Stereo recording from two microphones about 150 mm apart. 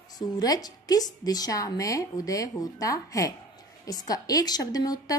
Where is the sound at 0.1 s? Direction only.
25° left (ahead or behind).